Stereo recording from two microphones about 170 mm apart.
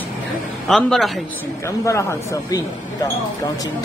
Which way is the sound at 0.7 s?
5° left (ahead or behind).